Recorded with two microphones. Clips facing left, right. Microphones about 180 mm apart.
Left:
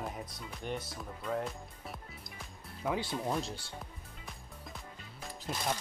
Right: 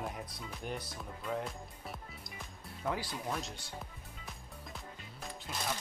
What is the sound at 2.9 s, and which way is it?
Speech, 25° left (ahead or behind).